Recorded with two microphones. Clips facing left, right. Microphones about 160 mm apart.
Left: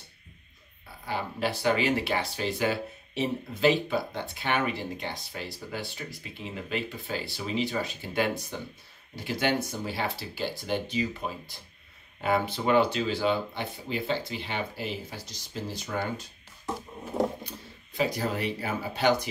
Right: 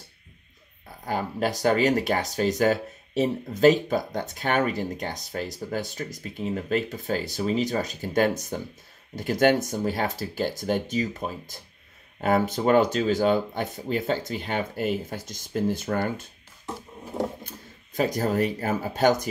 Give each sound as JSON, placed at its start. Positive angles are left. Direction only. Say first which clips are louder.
{"t": 1.0, "sound": "speech", "louder": "right 4 dB", "side_deg": -45}
{"t": 17.4, "sound": "speech", "louder": "left 1 dB", "side_deg": -45}